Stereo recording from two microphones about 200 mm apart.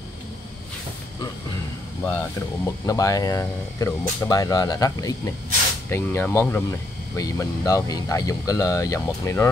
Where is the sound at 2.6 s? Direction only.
15° left (ahead or behind).